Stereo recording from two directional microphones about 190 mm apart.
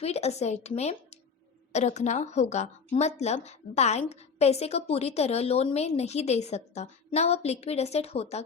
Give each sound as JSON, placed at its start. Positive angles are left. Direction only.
{"t": 0.0, "sound": "a woman's voice", "side_deg": 35}